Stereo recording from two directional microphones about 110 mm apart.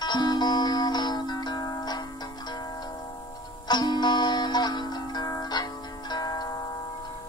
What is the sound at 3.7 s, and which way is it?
Music, 40° left (ahead or behind).